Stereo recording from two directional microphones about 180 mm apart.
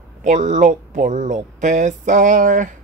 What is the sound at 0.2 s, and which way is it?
Speech, 40° right (ahead or behind).